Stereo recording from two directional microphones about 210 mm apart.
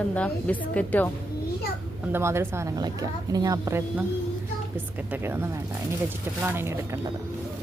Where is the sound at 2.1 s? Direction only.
10° right (ahead or behind).